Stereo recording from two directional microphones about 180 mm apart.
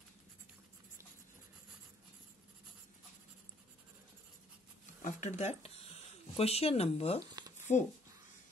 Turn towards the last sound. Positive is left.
turn(degrees=45)  # may be behind; listen again after turning